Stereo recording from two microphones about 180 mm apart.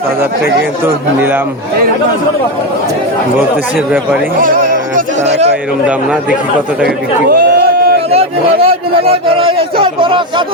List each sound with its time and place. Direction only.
4.4 s music: 50° right (ahead or behind)
6.8 s a sound: 55° right (ahead or behind)
8.1 s a man's voice: 35° right (ahead or behind)